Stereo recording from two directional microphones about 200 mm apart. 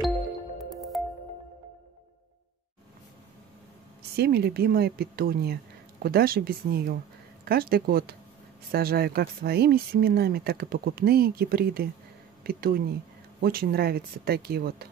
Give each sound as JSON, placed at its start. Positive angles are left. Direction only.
{"t": 0.9, "sound": "music", "side_deg": 0}
{"t": 4.2, "sound": "speech", "side_deg": -50}